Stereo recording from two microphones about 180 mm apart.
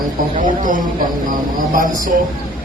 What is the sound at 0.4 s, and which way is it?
A man's voice, 45° right (ahead or behind).